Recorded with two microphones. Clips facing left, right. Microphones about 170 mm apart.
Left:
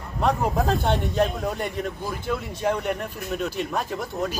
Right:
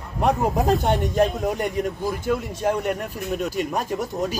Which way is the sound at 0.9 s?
Centre (ahead or behind).